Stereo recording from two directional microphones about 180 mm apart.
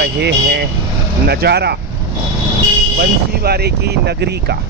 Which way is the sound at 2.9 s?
60° right (ahead or behind).